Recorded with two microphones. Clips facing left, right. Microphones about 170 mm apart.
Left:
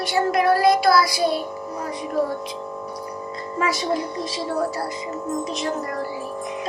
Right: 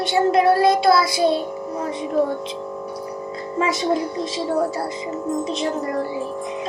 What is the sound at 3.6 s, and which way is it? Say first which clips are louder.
Music: right 3 dB; 25° right (ahead or behind).